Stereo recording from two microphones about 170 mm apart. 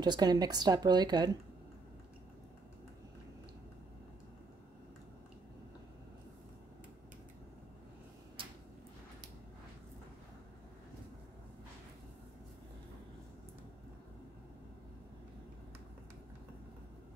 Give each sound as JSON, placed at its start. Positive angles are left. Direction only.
{"t": 0.0, "sound": "a woman's voice", "side_deg": -25}